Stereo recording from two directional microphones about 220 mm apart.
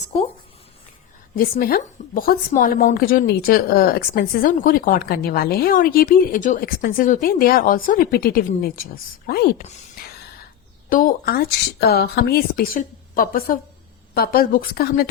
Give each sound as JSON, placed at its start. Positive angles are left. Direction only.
{"t": 1.4, "sound": "a woman's voice", "side_deg": 40}
{"t": 10.8, "sound": "a woman's voice", "side_deg": 40}